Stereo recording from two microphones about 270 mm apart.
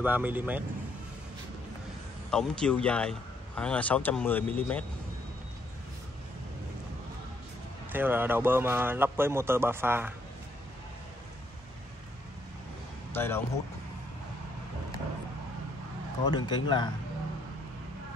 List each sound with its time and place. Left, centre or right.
0.0 s a man's voice: centre
2.3 s speech: centre
7.9 s a man's voice: centre
13.1 s speech: centre
16.3 s speech: centre